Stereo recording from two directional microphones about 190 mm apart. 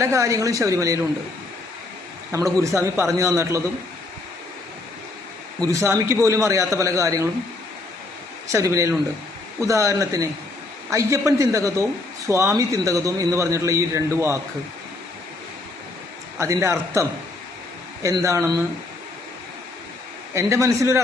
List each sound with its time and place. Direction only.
0.0 s a man's voice: 15° right (ahead or behind)
2.3 s a man's voice: 15° right (ahead or behind)
5.5 s a man's voice: 15° right (ahead or behind)
8.5 s a man's voice: 15° right (ahead or behind)
16.4 s a man's voice: 15° right (ahead or behind)
20.3 s a man's voice: 15° right (ahead or behind)